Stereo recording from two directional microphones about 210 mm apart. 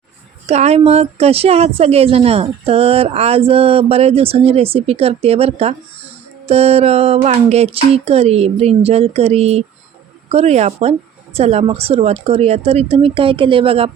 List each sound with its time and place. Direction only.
0.4 s speech: 30° right (ahead or behind)